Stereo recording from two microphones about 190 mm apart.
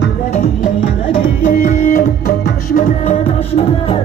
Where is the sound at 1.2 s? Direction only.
40° left (ahead or behind).